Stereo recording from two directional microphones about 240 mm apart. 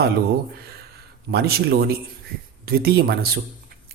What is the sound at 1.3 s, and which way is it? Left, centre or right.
Speech, right.